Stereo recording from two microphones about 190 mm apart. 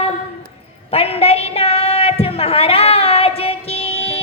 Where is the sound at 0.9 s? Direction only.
30° left (ahead or behind).